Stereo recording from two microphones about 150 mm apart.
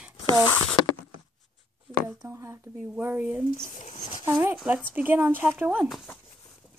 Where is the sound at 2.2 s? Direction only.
20° right (ahead or behind).